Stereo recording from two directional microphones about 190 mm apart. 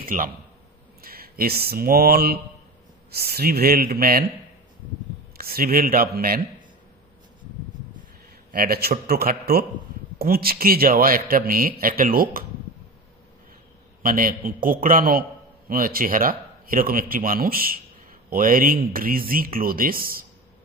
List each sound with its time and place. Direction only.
0.0 s a man's voice: 45° right (ahead or behind)
5.4 s a man's voice: 50° right (ahead or behind)
8.5 s a man's voice: 50° right (ahead or behind)
14.0 s a man's voice: 45° right (ahead or behind)